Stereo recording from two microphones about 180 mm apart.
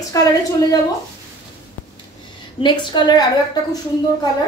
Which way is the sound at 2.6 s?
25° left (ahead or behind).